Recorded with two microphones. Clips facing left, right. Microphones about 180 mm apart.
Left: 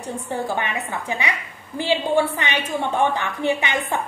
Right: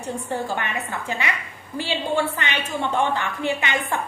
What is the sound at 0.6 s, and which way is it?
A woman's voice, 15° left (ahead or behind).